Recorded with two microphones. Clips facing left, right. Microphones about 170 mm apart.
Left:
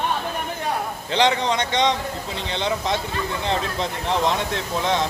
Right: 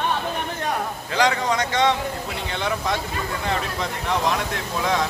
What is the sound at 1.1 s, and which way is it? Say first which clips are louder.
Speech: left 1 dB; 25° left (ahead or behind).